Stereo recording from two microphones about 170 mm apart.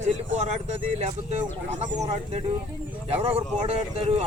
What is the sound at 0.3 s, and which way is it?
Speech, 40° right (ahead or behind).